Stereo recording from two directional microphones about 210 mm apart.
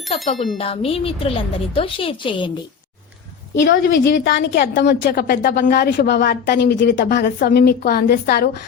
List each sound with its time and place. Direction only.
0.1 s a woman's voice: 25° left (ahead or behind)
3.5 s a woman's voice: 60° left (ahead or behind)
4.3 s a woman's voice: 50° left (ahead or behind)